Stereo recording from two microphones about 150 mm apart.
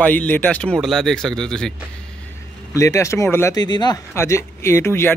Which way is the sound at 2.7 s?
20° left (ahead or behind).